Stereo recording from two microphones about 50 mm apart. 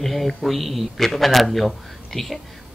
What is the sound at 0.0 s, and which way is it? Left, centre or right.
A man's voice, centre.